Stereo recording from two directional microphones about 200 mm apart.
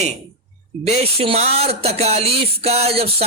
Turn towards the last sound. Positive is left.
turn(degrees=-30)  # may be behind; listen again after turning